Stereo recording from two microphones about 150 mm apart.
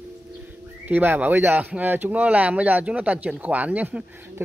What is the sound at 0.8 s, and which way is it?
Speech, 10° right (ahead or behind).